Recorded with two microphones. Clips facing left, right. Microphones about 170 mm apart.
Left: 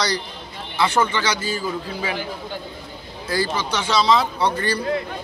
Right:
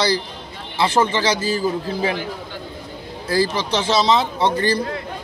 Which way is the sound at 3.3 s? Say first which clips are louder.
Right 4 dB; 30° right (ahead or behind).